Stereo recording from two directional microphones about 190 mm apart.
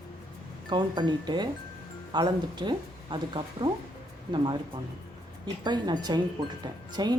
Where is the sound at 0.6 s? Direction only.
25° right (ahead or behind).